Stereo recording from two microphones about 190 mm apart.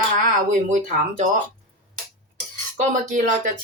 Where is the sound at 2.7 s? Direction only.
40° right (ahead or behind).